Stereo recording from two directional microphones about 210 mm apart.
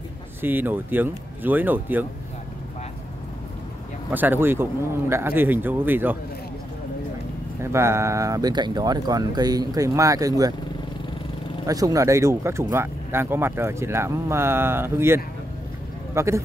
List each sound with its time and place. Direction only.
0.4 s speech: 10° right (ahead or behind)
4.1 s speech: 10° right (ahead or behind)
7.6 s speech: 10° right (ahead or behind)
11.6 s speech: 15° right (ahead or behind)